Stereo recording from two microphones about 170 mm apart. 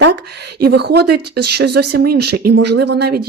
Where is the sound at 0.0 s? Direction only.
75° right (ahead or behind).